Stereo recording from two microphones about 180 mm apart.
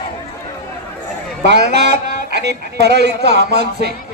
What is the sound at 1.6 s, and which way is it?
Speech, 65° right (ahead or behind).